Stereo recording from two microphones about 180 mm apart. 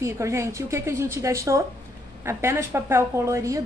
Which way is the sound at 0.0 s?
15° right (ahead or behind).